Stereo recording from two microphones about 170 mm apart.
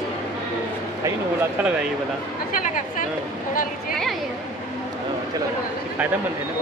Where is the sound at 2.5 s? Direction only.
50° left (ahead or behind).